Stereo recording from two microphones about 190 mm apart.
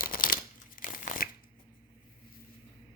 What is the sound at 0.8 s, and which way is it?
Crumpling, 45° left (ahead or behind).